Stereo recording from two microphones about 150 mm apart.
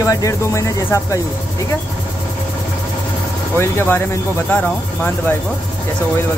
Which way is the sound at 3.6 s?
15° left (ahead or behind).